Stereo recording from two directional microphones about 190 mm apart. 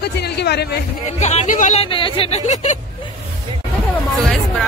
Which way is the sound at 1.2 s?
35° left (ahead or behind).